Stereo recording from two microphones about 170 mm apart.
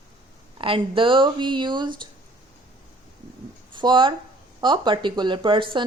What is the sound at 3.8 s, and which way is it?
Speech, 30° right (ahead or behind).